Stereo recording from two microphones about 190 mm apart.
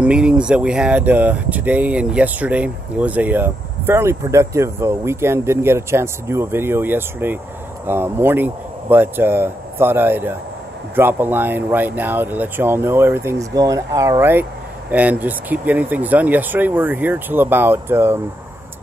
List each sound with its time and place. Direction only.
0.0 s speech: 5° right (ahead or behind)